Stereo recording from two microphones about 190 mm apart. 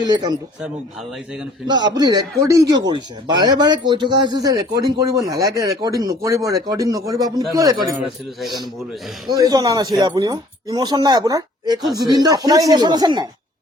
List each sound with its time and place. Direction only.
0.0 s speech: 20° right (ahead or behind)
1.6 s speech: 25° right (ahead or behind)
9.2 s speech: 20° right (ahead or behind)